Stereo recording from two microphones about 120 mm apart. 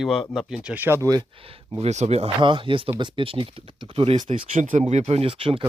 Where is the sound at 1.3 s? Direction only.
50° right (ahead or behind).